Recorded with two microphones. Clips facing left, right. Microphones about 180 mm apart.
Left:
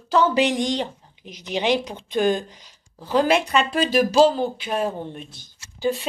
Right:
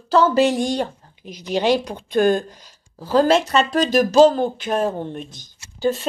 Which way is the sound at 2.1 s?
50° right (ahead or behind).